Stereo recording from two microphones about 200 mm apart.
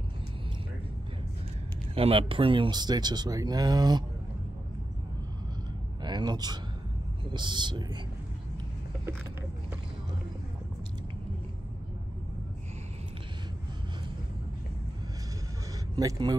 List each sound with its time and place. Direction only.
2.0 s speech: 30° right (ahead or behind)
6.0 s a man's voice: 20° right (ahead or behind)
16.0 s speech: 20° right (ahead or behind)